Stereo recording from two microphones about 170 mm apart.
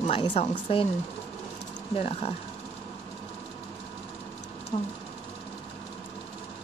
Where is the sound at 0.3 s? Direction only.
35° left (ahead or behind).